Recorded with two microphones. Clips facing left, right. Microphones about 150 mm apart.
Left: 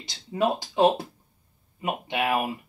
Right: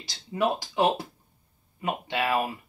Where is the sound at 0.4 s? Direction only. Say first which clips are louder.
Left 3 dB; 25° left (ahead or behind).